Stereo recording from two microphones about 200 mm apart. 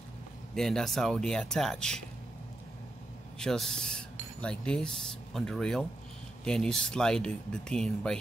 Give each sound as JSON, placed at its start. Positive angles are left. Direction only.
{"t": 0.6, "sound": "speech", "side_deg": 0}
{"t": 3.3, "sound": "speech", "side_deg": 0}